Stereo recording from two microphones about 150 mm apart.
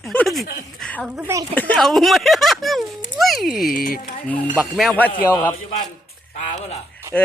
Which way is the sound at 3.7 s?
75° left (ahead or behind).